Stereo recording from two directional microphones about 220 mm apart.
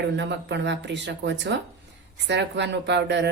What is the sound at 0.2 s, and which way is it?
A woman's voice, 50° right (ahead or behind).